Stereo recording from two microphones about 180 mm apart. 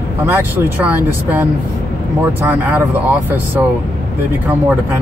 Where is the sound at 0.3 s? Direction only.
10° right (ahead or behind).